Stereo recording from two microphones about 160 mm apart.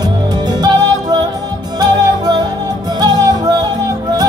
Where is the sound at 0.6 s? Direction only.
25° right (ahead or behind).